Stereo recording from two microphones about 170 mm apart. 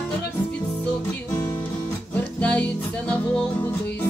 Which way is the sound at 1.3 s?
20° left (ahead or behind).